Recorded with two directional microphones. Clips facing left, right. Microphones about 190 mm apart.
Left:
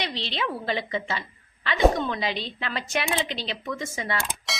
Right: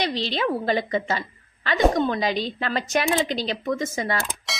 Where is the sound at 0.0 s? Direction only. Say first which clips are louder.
Right 6 dB; 40° right (ahead or behind).